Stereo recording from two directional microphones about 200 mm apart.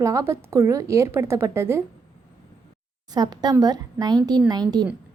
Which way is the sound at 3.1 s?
20° right (ahead or behind).